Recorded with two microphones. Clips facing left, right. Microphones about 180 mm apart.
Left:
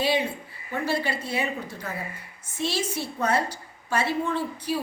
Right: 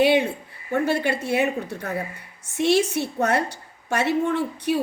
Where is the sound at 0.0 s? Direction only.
65° right (ahead or behind).